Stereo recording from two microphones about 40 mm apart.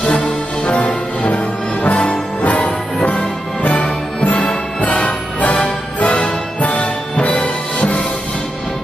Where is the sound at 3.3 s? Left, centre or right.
Centre.